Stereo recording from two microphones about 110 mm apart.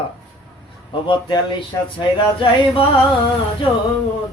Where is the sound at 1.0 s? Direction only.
45° left (ahead or behind).